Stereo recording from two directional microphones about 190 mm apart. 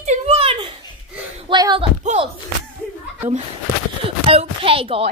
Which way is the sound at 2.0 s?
35° right (ahead or behind).